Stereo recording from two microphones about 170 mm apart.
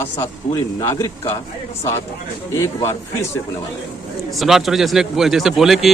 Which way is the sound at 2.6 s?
15° left (ahead or behind).